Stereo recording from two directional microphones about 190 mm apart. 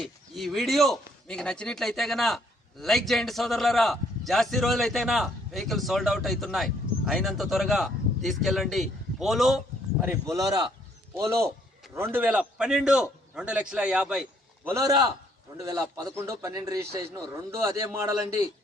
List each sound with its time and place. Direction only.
0.0 s a man's voice: centre (ahead or behind)
10.3 s speech: 20° right (ahead or behind)
11.9 s a man's voice: 10° right (ahead or behind)
16.1 s a man's voice: 15° right (ahead or behind)